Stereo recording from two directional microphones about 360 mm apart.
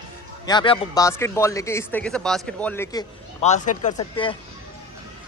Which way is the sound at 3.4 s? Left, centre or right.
Centre.